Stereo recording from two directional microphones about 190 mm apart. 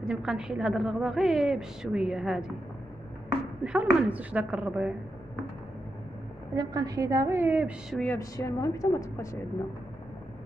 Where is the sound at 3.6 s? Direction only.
5° right (ahead or behind).